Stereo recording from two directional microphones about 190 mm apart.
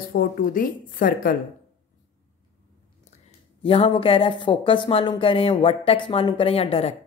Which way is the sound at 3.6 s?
30° left (ahead or behind).